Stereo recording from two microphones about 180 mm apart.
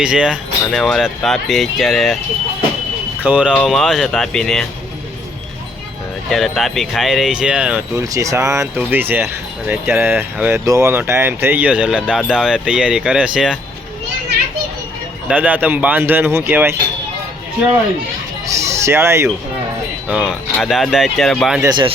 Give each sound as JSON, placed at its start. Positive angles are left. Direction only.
{"t": 0.0, "sound": "speech", "side_deg": -5}
{"t": 3.2, "sound": "speech", "side_deg": -5}
{"t": 3.5, "sound": "speech", "side_deg": 5}
{"t": 6.3, "sound": "speech", "side_deg": 0}
{"t": 7.9, "sound": "speech", "side_deg": -15}
{"t": 15.3, "sound": "speech", "side_deg": -10}
{"t": 18.9, "sound": "speech", "side_deg": -15}
{"t": 20.1, "sound": "speech", "side_deg": -5}
{"t": 21.6, "sound": "speech", "side_deg": -25}